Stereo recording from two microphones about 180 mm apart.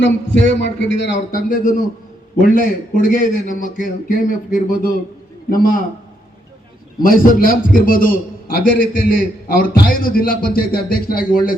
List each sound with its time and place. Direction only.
0.0 s a man's voice: 80° left
1.3 s a man's voice: 50° left (ahead or behind)
7.0 s a man's voice: 50° left (ahead or behind)